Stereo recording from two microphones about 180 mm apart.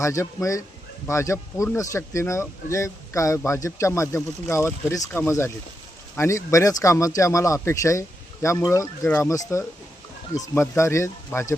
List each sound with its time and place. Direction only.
0.0 s speech: 15° left (ahead or behind)